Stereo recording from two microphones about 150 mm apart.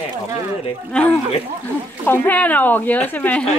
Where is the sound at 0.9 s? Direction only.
5° left (ahead or behind).